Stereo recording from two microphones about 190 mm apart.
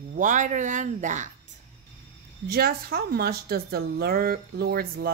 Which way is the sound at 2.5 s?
55° right (ahead or behind).